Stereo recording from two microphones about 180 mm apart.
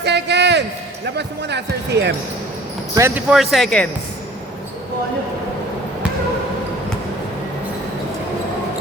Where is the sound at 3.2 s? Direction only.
Centre (ahead or behind).